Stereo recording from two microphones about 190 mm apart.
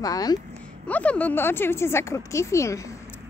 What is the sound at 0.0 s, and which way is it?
Speech, 20° left (ahead or behind).